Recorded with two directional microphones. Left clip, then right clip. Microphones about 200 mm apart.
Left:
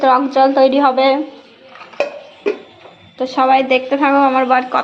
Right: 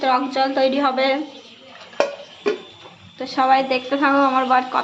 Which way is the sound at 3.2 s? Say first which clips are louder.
Left 4 dB; 20° left (ahead or behind).